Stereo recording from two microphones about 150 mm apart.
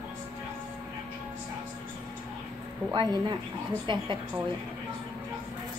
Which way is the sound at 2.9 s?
30° right (ahead or behind).